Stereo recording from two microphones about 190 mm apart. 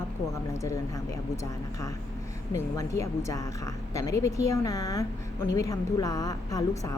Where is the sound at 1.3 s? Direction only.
15° left (ahead or behind).